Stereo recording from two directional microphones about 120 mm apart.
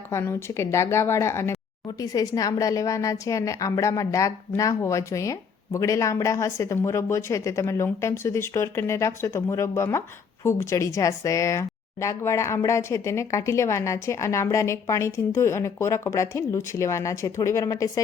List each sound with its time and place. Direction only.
0.1 s a woman's voice: 20° left (ahead or behind)